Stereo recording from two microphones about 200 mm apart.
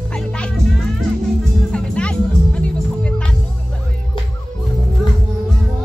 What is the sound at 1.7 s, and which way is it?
Music, 5° left (ahead or behind).